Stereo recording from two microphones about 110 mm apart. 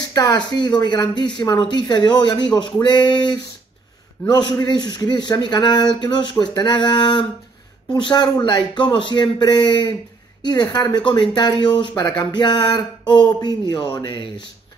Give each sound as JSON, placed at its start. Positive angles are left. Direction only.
{"t": 0.0, "sound": "a sound", "side_deg": 35}
{"t": 0.6, "sound": "speech", "side_deg": 40}
{"t": 4.3, "sound": "speech", "side_deg": 40}